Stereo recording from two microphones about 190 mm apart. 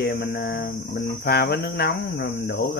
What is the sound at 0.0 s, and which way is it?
Cricket, 65° left (ahead or behind).